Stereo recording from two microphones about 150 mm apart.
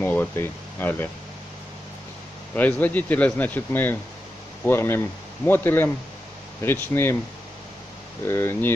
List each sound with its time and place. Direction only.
0.0 s speech: 10° left (ahead or behind)
2.5 s speech: 10° left (ahead or behind)
8.3 s speech: 15° left (ahead or behind)